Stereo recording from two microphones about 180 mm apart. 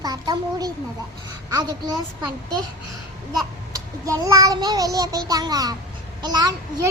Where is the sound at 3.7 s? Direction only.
20° right (ahead or behind).